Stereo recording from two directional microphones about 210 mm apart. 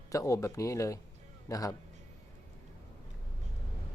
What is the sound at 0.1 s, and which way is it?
Speech, 15° left (ahead or behind).